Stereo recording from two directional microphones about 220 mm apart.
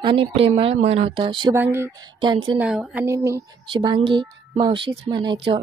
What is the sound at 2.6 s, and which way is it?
A woman's voice, 5° right (ahead or behind).